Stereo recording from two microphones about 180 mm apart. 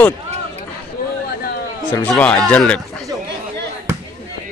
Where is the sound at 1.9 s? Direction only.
10° left (ahead or behind).